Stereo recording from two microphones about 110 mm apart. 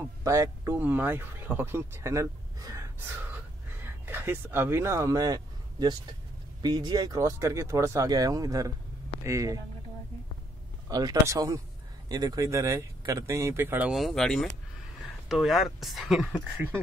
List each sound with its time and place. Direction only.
0.2 s speech: 30° right (ahead or behind)
0.7 s speech: 15° right (ahead or behind)
10.9 s speech: 35° right (ahead or behind); by 13.9 s 15° right (ahead or behind)
13.9 s speech: centre (ahead or behind)
16.5 s speech: 20° right (ahead or behind)